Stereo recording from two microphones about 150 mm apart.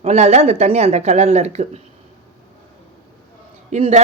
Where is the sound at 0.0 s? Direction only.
45° right (ahead or behind).